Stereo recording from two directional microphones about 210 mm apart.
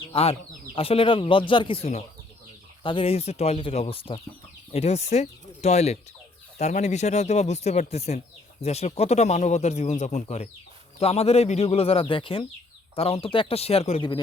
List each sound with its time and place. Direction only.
0.1 s speech: 30° left (ahead or behind)